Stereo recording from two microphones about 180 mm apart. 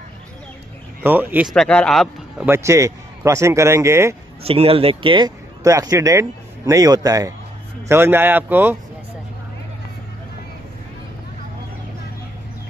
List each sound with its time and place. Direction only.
1.0 s a man's voice: 10° right (ahead or behind)
1.5 s a man's voice: 5° left (ahead or behind)
2.4 s a man's voice: 15° right (ahead or behind)
4.4 s a man's voice: 35° right (ahead or behind); by 8.7 s 10° right (ahead or behind)